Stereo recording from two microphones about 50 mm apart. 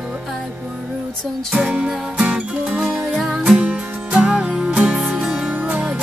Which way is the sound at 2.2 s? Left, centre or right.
Right.